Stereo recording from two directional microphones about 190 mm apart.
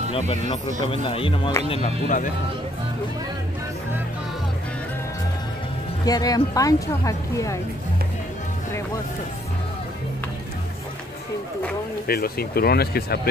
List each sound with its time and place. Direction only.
0.1 s speech: 30° left (ahead or behind)
1.8 s speech: 45° left (ahead or behind)
6.0 s speech: 20° left (ahead or behind)
12.1 s speech: 55° left (ahead or behind)